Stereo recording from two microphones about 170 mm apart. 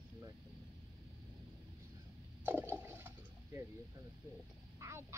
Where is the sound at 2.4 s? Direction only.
10° right (ahead or behind).